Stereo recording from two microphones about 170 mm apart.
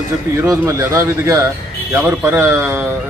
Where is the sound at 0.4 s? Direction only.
15° right (ahead or behind).